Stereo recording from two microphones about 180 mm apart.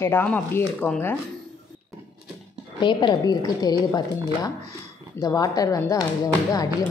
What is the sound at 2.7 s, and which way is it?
A woman's voice, 25° left (ahead or behind).